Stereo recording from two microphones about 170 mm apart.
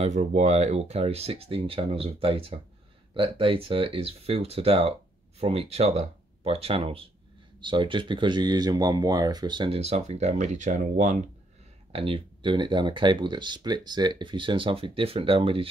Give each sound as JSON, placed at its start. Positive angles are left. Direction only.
{"t": 0.0, "sound": "speech", "side_deg": -45}
{"t": 11.9, "sound": "speech", "side_deg": -30}